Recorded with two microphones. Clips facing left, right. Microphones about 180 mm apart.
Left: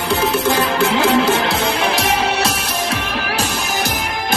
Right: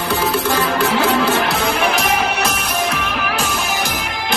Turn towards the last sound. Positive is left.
turn(degrees=25)  # may be behind; listen again after turning